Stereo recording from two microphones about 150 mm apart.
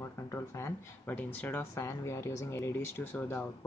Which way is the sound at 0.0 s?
20° left (ahead or behind).